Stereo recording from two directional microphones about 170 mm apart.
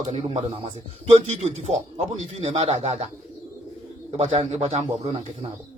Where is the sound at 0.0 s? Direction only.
35° right (ahead or behind).